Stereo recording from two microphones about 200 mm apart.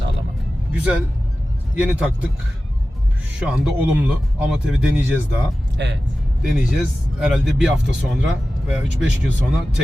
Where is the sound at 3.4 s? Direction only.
5° right (ahead or behind).